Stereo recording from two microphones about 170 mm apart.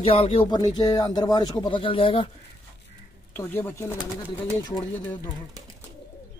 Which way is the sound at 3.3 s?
15° left (ahead or behind).